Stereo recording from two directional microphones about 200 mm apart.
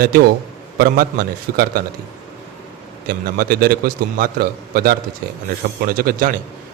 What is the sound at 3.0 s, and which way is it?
A man's voice, 50° right (ahead or behind).